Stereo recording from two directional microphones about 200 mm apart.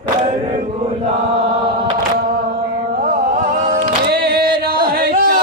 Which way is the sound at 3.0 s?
45° right (ahead or behind).